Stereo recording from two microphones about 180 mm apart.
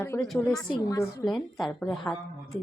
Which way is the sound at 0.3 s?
5° left (ahead or behind).